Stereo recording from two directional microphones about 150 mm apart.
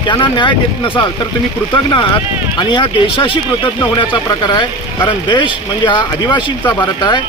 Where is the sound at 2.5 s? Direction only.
35° left (ahead or behind).